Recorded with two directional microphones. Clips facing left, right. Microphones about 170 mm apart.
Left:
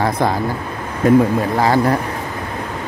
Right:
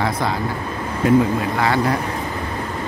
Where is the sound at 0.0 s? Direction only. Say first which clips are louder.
Left 4 dB; 45° left (ahead or behind).